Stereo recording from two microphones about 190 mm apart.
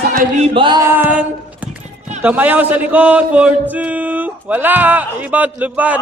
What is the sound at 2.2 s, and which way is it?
Male singing, 10° right (ahead or behind).